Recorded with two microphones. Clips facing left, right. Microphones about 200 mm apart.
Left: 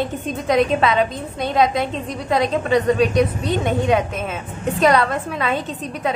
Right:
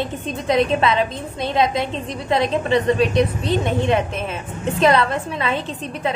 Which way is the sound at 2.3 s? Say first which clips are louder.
Even; centre (ahead or behind).